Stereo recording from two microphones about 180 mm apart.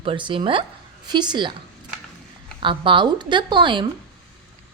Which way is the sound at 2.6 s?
25° right (ahead or behind).